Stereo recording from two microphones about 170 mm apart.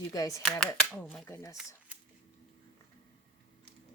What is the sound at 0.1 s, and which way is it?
Speech, 20° left (ahead or behind).